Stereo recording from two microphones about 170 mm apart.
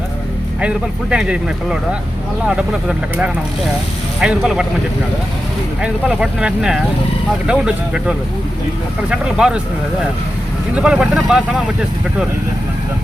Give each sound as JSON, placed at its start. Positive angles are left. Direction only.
{"t": 0.6, "sound": "speech", "side_deg": -5}
{"t": 4.2, "sound": "speech", "side_deg": -5}
{"t": 5.8, "sound": "speech", "side_deg": -5}
{"t": 10.8, "sound": "speech", "side_deg": -5}